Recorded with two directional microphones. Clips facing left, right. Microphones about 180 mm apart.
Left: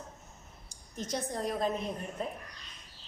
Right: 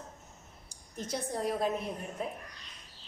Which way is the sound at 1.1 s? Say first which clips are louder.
Right 1 dB; 5° right (ahead or behind).